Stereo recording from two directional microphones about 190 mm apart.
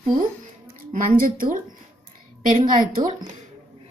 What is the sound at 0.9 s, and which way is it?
Speech, 45° right (ahead or behind).